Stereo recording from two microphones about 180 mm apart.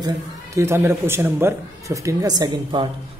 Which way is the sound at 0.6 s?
15° right (ahead or behind).